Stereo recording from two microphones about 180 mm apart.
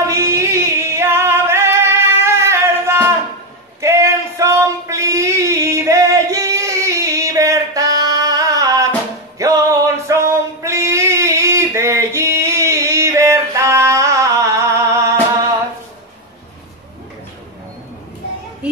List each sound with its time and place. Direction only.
0.0 s music: 15° right (ahead or behind)
3.8 s a sound: 15° right (ahead or behind)
9.4 s music: 20° right (ahead or behind)
18.6 s children playing: 5° right (ahead or behind)